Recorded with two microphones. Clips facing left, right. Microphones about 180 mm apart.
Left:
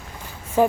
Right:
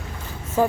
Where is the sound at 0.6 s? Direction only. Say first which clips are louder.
Left 2 dB; 20° left (ahead or behind).